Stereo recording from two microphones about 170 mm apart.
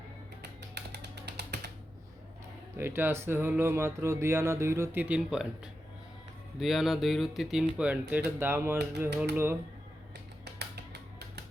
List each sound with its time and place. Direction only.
0.7 s typing: 80° right
2.7 s speech: 15° right (ahead or behind)
6.6 s speech: centre (ahead or behind)
10.4 s a sound: 80° right